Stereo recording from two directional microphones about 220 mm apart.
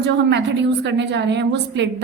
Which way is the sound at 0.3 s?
50° right (ahead or behind).